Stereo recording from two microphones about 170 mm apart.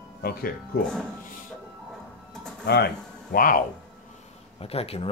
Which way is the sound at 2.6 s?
80° left.